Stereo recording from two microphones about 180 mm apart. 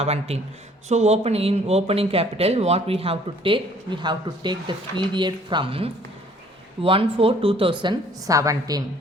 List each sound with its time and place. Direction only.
0.0 s a woman's voice: 35° right (ahead or behind); by 8.8 s 20° right (ahead or behind)